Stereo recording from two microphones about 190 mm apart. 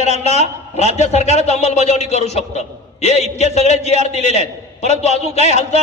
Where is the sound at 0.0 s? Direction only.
35° left (ahead or behind).